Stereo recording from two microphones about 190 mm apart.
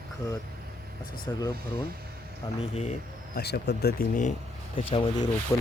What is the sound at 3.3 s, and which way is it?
Speech, 60° left (ahead or behind).